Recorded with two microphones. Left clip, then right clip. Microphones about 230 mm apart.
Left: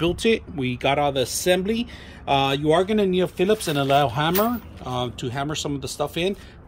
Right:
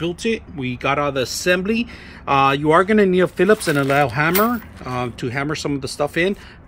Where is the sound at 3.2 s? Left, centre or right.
Right.